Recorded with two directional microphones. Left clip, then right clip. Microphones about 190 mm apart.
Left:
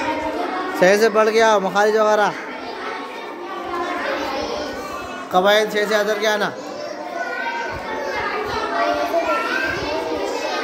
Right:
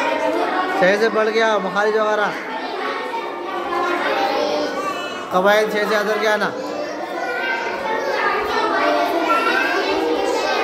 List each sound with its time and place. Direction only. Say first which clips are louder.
0.7 s a man's voice: left 3 dB; 45° left (ahead or behind)
5.3 s a man's voice: even; 30° left (ahead or behind)